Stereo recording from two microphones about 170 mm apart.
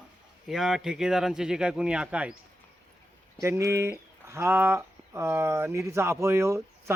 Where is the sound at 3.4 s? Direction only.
15° right (ahead or behind).